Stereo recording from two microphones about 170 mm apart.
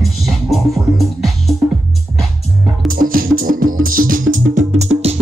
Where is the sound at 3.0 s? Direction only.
55° right (ahead or behind).